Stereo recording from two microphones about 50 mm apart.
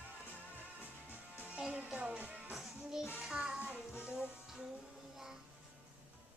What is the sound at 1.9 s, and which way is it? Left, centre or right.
Music, right.